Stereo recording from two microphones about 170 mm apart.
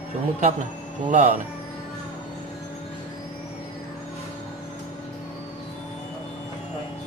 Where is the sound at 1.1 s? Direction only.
45° right (ahead or behind).